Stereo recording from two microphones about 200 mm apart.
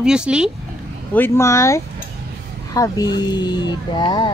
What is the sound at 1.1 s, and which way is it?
Speech, 10° left (ahead or behind).